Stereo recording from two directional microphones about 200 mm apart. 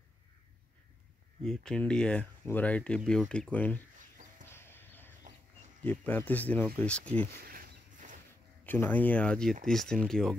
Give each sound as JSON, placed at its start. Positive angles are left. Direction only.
{"t": 1.4, "sound": "speech", "side_deg": 5}
{"t": 4.5, "sound": "chicken", "side_deg": 10}
{"t": 5.9, "sound": "speech", "side_deg": 10}
{"t": 7.4, "sound": "a sound", "side_deg": -45}
{"t": 8.6, "sound": "speech", "side_deg": 10}